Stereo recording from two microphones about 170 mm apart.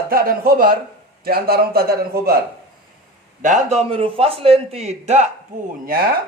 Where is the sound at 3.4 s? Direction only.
45° right (ahead or behind).